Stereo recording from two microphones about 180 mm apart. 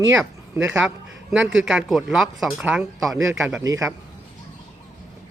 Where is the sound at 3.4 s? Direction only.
15° right (ahead or behind).